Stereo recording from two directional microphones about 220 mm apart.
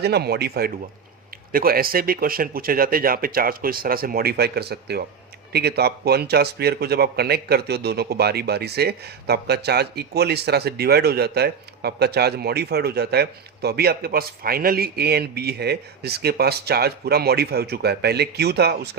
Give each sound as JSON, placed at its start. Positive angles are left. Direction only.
{"t": 0.0, "sound": "speech", "side_deg": -45}